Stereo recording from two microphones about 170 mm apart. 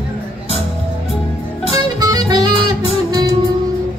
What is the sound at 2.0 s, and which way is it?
Music, 20° right (ahead or behind).